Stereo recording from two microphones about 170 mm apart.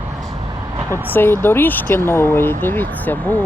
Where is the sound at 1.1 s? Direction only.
15° left (ahead or behind).